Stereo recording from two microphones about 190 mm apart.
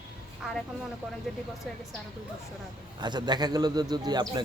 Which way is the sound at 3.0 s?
25° right (ahead or behind).